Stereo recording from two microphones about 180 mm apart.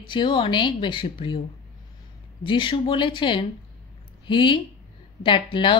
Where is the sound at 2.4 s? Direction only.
25° left (ahead or behind).